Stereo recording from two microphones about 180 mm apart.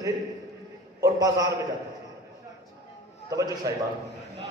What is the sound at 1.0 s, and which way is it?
Speech, 20° right (ahead or behind).